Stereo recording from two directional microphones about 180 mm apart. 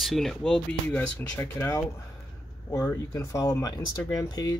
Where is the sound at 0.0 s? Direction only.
Centre (ahead or behind).